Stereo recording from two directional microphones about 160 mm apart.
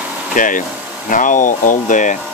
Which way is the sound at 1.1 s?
55° left (ahead or behind).